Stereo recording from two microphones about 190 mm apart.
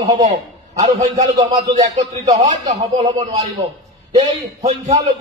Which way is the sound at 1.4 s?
25° right (ahead or behind).